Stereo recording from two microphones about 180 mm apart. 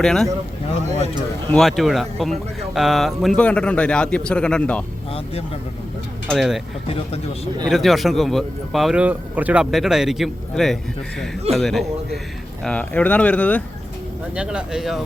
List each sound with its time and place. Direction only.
0.0 s speech: 5° left (ahead or behind)
0.9 s speech: 40° right (ahead or behind)
1.5 s speech: centre (ahead or behind)
6.2 s speech: centre (ahead or behind)
6.8 s speech: 35° left (ahead or behind)
7.7 s speech: centre (ahead or behind)
14.3 s speech: 5° right (ahead or behind)